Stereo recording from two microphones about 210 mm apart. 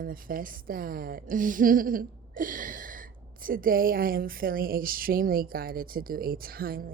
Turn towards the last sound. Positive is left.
turn(degrees=-45)  # may be behind; listen again after turning